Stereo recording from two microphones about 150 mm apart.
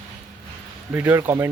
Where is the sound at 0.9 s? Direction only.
15° right (ahead or behind).